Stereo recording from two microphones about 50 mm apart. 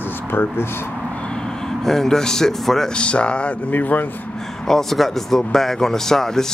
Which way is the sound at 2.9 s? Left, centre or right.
Left.